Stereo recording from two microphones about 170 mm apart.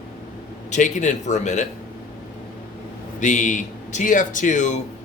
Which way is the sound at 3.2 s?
45° left (ahead or behind).